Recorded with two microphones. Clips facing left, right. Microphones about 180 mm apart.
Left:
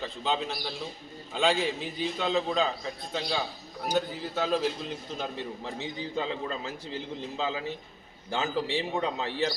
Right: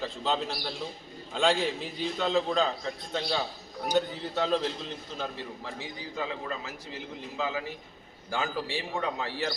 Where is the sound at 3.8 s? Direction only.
5° left (ahead or behind).